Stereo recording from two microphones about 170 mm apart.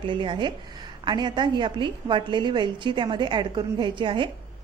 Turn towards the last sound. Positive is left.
turn(degrees=-30)  # may be behind; listen again after turning